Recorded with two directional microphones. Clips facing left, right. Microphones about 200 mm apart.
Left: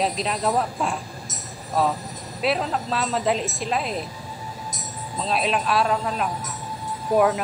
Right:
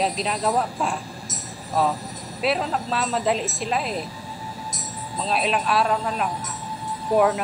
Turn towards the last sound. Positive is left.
turn(degrees=0)  # may be behind; listen again after turning